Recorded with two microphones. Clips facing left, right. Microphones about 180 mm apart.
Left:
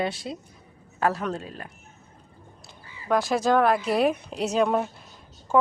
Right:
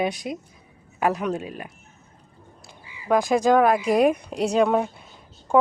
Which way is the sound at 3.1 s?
Centre (ahead or behind).